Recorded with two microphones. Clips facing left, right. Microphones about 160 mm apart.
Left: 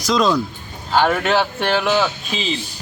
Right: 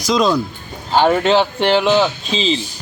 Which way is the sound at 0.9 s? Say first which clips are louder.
Right 3 dB; 20° right (ahead or behind).